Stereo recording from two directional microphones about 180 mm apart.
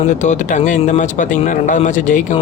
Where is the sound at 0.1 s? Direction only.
40° left (ahead or behind).